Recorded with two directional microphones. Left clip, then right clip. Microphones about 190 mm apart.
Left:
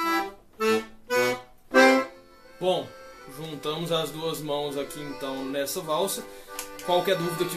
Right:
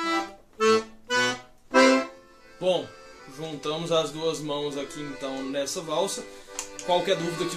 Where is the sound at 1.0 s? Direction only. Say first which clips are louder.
Left 1 dB; 10° right (ahead or behind).